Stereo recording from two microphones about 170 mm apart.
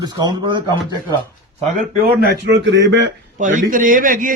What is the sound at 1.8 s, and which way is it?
Speech, 65° right (ahead or behind).